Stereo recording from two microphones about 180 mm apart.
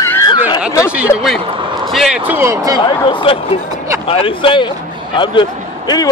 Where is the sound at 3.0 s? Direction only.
25° left (ahead or behind).